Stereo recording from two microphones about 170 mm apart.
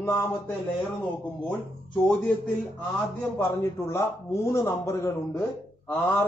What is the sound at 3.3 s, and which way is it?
Speech, 15° left (ahead or behind).